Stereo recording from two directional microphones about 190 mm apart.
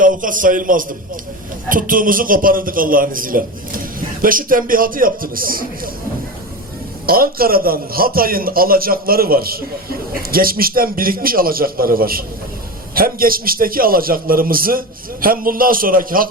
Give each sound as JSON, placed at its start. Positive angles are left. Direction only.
{"t": 0.0, "sound": "a man's voice", "side_deg": -45}
{"t": 7.1, "sound": "a man's voice", "side_deg": -50}